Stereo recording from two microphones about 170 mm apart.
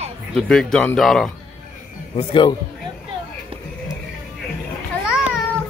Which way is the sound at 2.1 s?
30° left (ahead or behind).